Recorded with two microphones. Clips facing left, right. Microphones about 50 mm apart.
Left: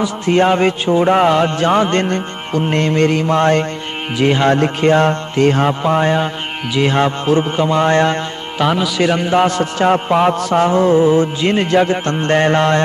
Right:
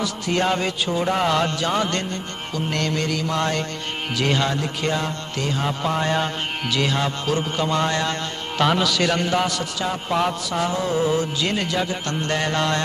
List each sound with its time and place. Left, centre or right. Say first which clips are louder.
0.0 s a man's voice: left 8 dB; left
1.6 s music: left 9 dB; left
4.2 s a man's voice: left 8 dB; left
4.5 s speech: left 11 dB; left
5.8 s a man's voice: left 7 dB; left
6.9 s a man's voice: left 8 dB; left
7.9 s music: left 10 dB; left
8.5 s a man's voice: left 4 dB; centre
9.4 s music: left 10 dB; left